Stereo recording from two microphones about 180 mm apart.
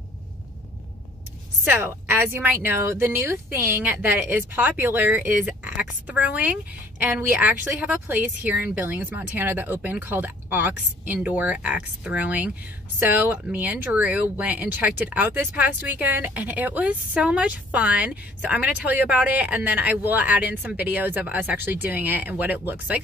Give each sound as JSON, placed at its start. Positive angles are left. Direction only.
{"t": 1.6, "sound": "speech", "side_deg": -10}